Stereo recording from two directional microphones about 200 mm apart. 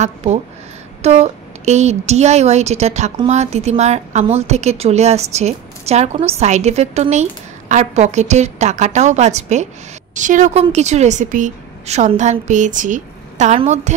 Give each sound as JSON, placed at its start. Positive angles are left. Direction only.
{"t": 1.0, "sound": "a woman's voice", "side_deg": -30}